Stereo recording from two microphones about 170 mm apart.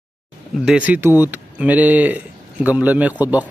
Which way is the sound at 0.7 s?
10° right (ahead or behind).